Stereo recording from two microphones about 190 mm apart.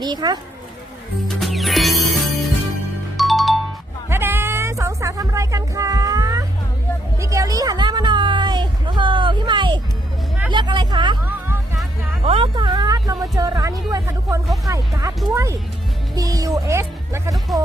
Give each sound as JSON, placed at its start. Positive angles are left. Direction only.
{"t": 0.0, "sound": "speech", "side_deg": -20}
{"t": 1.4, "sound": "music", "side_deg": 0}
{"t": 4.1, "sound": "music", "side_deg": -10}
{"t": 7.2, "sound": "a sound", "side_deg": -15}
{"t": 10.5, "sound": "speech", "side_deg": -25}
{"t": 12.2, "sound": "speech", "side_deg": -30}
{"t": 16.1, "sound": "speech", "side_deg": -20}